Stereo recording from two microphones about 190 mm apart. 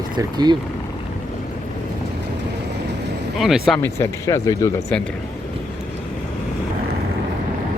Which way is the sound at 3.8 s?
15° left (ahead or behind).